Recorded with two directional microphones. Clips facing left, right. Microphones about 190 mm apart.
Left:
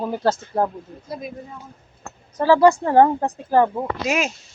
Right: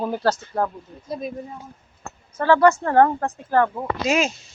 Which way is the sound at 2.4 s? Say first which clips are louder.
Left 2 dB; 10° left (ahead or behind).